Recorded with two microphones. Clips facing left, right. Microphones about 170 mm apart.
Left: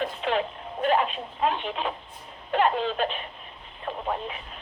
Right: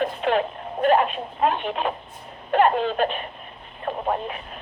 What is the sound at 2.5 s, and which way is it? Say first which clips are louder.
Speech: right 4 dB; 50° right (ahead or behind).